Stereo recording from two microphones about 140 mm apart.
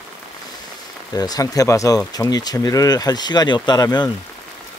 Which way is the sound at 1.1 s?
25° left (ahead or behind).